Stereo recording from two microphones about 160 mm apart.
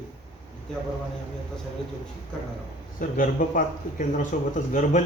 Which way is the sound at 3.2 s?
55° left (ahead or behind).